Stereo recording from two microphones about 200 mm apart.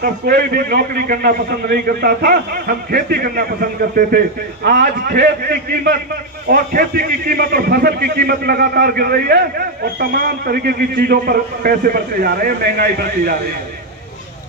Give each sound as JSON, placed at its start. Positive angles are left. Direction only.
{"t": 0.0, "sound": "a man's voice", "side_deg": -50}
{"t": 4.6, "sound": "a man's voice", "side_deg": -55}